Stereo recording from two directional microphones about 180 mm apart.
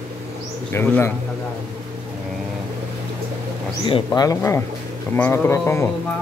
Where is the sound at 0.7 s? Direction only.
15° left (ahead or behind).